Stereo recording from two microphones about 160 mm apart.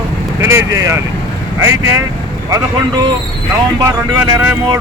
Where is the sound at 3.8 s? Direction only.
15° right (ahead or behind).